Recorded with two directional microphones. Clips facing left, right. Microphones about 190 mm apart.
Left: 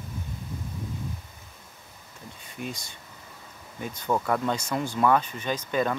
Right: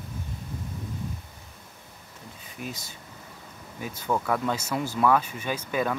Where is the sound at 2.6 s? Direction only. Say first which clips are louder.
Left 1 dB; 5° right (ahead or behind).